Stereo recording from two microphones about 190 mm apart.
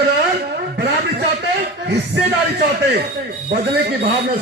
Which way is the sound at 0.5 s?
60° right (ahead or behind).